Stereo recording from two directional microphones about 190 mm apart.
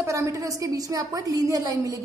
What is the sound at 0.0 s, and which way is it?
A woman's voice, 15° right (ahead or behind).